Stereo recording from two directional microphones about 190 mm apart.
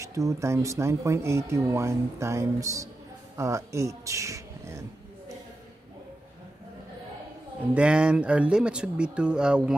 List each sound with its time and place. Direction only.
0.0 s speech: 15° right (ahead or behind)
7.7 s speech: 5° right (ahead or behind)